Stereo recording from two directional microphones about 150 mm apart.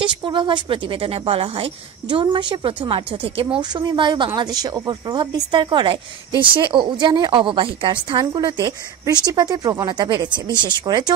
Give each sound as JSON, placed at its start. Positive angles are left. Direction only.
{"t": 0.0, "sound": "a woman's voice", "side_deg": -35}